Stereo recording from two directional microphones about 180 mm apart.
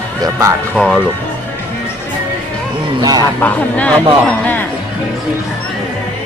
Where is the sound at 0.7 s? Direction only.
5° left (ahead or behind).